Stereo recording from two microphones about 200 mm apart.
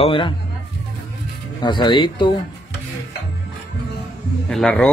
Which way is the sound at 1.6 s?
25° left (ahead or behind).